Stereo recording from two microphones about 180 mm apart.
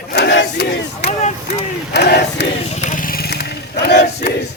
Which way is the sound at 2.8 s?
45° left (ahead or behind).